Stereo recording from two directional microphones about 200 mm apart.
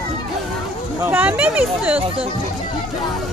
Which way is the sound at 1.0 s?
10° right (ahead or behind).